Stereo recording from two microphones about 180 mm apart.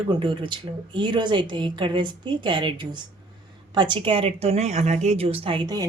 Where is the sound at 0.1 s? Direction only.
25° right (ahead or behind).